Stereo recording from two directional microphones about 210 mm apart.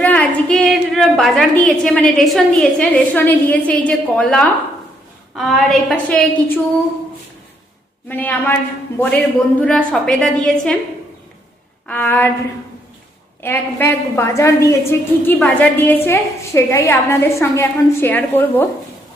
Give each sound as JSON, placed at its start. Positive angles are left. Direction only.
{"t": 0.0, "sound": "a woman's voice", "side_deg": 5}
{"t": 8.0, "sound": "a woman's voice", "side_deg": 10}
{"t": 11.9, "sound": "a woman's voice", "side_deg": 10}
{"t": 13.4, "sound": "a woman's voice", "side_deg": 10}